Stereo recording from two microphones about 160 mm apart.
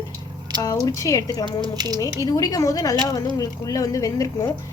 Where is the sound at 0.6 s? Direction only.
25° left (ahead or behind).